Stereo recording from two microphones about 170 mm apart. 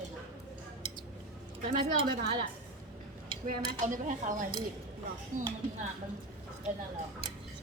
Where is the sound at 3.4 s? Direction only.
50° right (ahead or behind).